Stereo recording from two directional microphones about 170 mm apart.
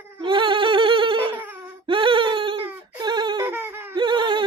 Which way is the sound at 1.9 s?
30° right (ahead or behind).